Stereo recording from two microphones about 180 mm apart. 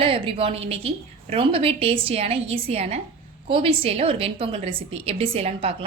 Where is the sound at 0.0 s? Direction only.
30° right (ahead or behind).